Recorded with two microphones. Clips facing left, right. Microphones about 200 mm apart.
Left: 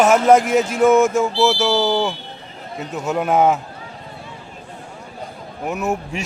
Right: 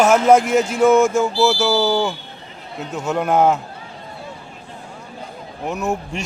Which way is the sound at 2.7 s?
Centre (ahead or behind).